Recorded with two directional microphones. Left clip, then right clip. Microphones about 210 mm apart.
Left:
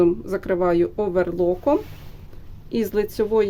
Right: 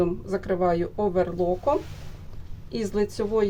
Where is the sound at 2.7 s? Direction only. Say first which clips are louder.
Left 4 dB; 50° left (ahead or behind).